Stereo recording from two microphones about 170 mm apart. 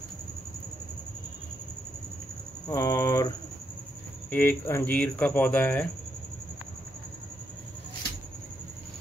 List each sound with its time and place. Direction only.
2.7 s speech: 15° left (ahead or behind)